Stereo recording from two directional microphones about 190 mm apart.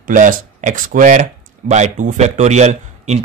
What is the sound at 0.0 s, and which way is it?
Speech, 45° right (ahead or behind).